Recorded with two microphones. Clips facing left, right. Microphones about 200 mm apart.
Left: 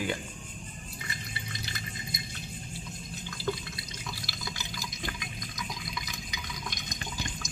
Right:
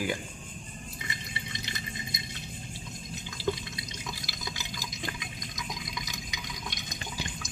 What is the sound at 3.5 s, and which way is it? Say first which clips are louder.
Drip: right 2 dB; 15° right (ahead or behind).